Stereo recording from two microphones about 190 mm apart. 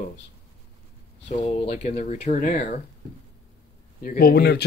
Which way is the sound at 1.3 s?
30° left (ahead or behind).